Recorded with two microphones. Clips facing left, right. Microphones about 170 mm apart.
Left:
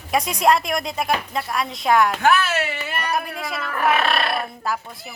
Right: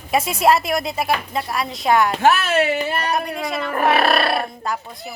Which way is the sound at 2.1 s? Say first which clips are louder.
Right 2 dB; 30° right (ahead or behind).